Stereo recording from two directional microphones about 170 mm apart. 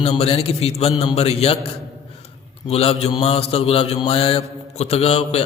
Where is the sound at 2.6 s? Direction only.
35° left (ahead or behind).